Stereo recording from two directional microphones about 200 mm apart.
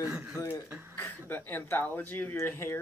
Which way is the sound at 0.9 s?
10° left (ahead or behind).